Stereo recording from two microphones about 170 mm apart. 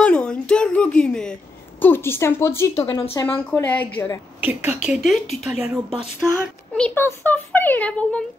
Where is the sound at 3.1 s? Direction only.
15° left (ahead or behind).